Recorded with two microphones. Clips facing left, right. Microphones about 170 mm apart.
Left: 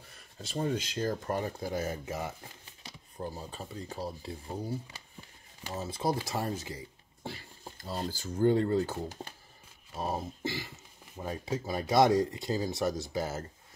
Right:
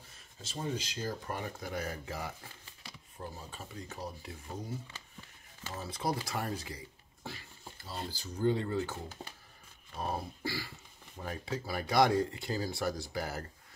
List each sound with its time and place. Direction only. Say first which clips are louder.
0.5 s speech: left 5 dB; 55° left (ahead or behind)
1.6 s speech: left 5 dB; 25° left (ahead or behind)
7.2 s a sound: left 4 dB; 30° left (ahead or behind)
7.8 s speech: left 6 dB; 45° left (ahead or behind)
9.9 s speech: left 3 dB; 15° left (ahead or behind)